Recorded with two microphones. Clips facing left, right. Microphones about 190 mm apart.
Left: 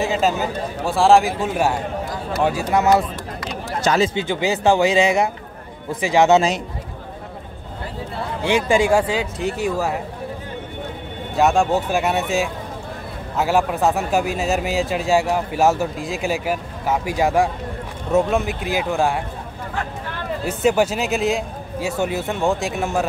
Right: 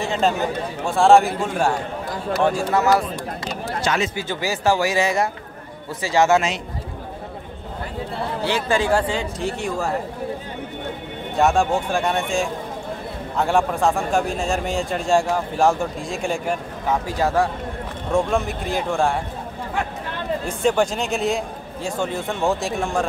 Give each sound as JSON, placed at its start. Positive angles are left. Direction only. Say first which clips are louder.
{"t": 0.0, "sound": "a man's voice", "louder": "left 1 dB", "side_deg": 5}
{"t": 3.8, "sound": "speech", "louder": "left 5 dB", "side_deg": 35}
{"t": 4.1, "sound": "speech", "louder": "left 4 dB", "side_deg": 20}
{"t": 8.5, "sound": "speech", "louder": "left 4 dB", "side_deg": 15}
{"t": 11.3, "sound": "a man's voice", "louder": "left 1 dB", "side_deg": 0}
{"t": 18.1, "sound": "a man's voice", "louder": "left 2 dB", "side_deg": 0}
{"t": 20.4, "sound": "a man's voice", "louder": "left 3 dB", "side_deg": 5}